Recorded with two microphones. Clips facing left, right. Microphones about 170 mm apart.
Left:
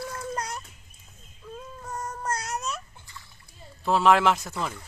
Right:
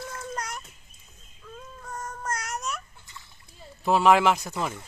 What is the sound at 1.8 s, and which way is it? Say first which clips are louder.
Child singing: left 2 dB; 15° left (ahead or behind).